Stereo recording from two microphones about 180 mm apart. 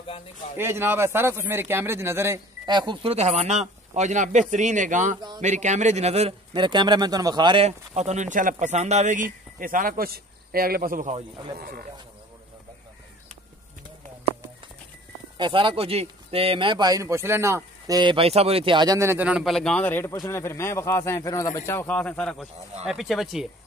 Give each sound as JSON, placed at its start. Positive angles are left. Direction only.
{"t": 0.6, "sound": "a man's voice", "side_deg": -15}
{"t": 15.3, "sound": "speech", "side_deg": -25}